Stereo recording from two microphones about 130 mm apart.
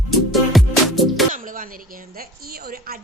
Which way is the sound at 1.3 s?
90° right.